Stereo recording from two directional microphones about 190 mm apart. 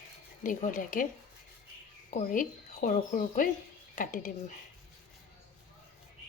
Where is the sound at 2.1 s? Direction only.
45° left (ahead or behind).